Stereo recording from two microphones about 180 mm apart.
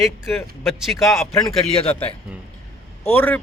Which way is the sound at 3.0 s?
10° left (ahead or behind).